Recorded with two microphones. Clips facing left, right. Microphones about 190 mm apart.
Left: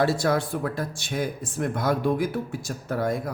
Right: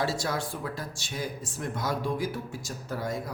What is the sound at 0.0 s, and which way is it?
A woman's voice, 60° left (ahead or behind).